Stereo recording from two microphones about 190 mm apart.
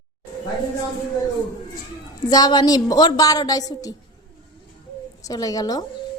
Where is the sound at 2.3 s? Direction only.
20° left (ahead or behind).